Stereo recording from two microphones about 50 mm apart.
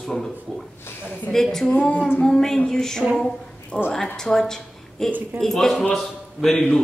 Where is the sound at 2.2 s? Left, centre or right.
Centre.